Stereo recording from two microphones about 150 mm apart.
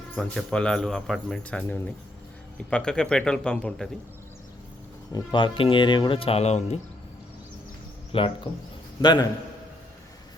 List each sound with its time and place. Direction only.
0.2 s speech: 5° left (ahead or behind)
5.1 s speech: 35° left (ahead or behind)
8.1 s a man's voice: 40° left (ahead or behind)